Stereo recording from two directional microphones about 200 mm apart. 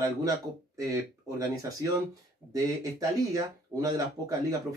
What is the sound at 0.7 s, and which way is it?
Speech, 15° right (ahead or behind).